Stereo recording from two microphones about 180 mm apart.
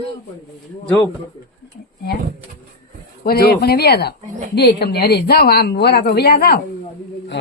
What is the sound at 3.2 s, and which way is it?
Speech, 60° left (ahead or behind).